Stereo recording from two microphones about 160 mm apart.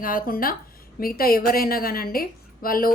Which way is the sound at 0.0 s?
60° left (ahead or behind).